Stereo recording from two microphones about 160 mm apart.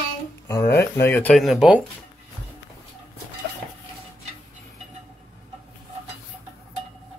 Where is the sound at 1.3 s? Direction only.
Centre (ahead or behind).